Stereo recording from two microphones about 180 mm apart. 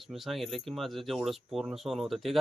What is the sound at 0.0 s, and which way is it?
Speech, centre (ahead or behind).